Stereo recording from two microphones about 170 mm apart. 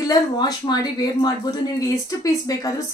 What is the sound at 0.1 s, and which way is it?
Speech, 25° left (ahead or behind).